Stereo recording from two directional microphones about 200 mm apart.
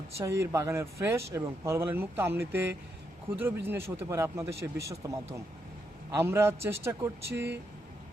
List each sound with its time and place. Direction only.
0.2 s speech: 15° right (ahead or behind)